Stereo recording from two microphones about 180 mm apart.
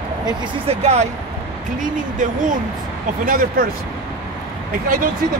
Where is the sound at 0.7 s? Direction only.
35° right (ahead or behind).